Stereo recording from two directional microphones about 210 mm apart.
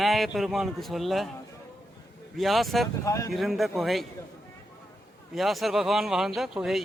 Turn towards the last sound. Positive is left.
turn(degrees=0)  # may be behind; listen again after turning